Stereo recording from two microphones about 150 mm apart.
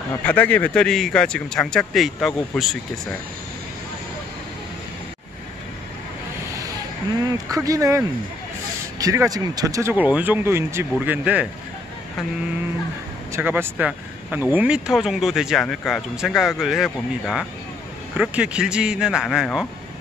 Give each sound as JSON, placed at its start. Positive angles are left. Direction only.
{"t": 0.2, "sound": "speech", "side_deg": 10}
{"t": 7.5, "sound": "speech", "side_deg": -20}
{"t": 13.3, "sound": "speech", "side_deg": -15}